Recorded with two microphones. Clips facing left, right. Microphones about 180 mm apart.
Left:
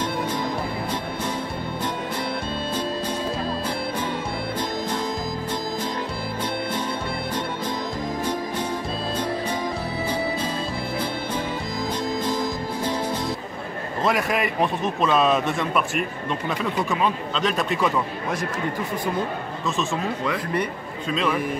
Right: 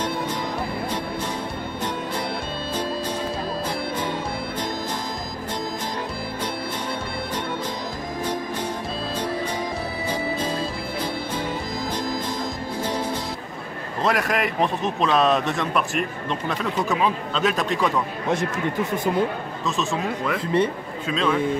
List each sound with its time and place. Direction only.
14.0 s a man's voice: centre (ahead or behind)
19.6 s a man's voice: centre (ahead or behind)
20.3 s a man's voice: 25° right (ahead or behind)
21.1 s a man's voice: 5° left (ahead or behind)